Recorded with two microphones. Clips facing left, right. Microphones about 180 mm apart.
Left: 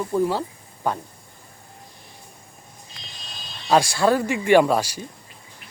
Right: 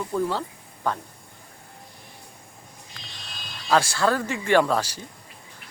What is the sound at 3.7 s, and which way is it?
Speech, 15° left (ahead or behind).